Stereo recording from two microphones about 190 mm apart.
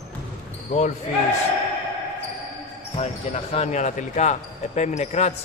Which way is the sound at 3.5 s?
35° left (ahead or behind).